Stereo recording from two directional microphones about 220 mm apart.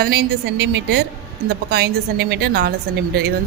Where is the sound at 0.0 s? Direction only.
45° right (ahead or behind).